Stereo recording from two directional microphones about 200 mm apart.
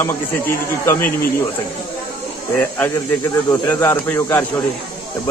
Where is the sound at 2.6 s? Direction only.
10° left (ahead or behind).